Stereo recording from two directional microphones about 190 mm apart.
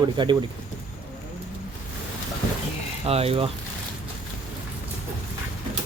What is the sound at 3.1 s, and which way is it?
Speech, 30° right (ahead or behind).